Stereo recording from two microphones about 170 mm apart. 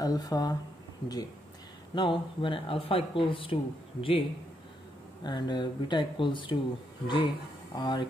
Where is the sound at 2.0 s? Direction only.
30° left (ahead or behind).